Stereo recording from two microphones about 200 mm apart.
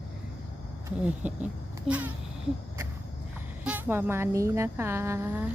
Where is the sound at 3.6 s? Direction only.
10° right (ahead or behind).